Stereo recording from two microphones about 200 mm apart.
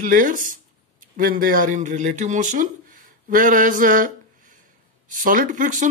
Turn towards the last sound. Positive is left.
turn(degrees=-40)  # may be behind; listen again after turning